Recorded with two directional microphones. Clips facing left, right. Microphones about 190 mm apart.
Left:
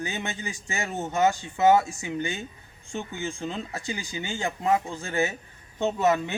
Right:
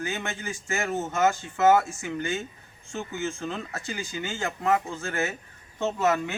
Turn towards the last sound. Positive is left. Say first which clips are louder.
# left 1 dB
turn(degrees=15)  # may be behind; listen again after turning